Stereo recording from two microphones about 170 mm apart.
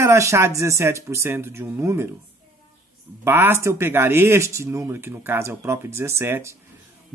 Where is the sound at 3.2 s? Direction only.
15° right (ahead or behind).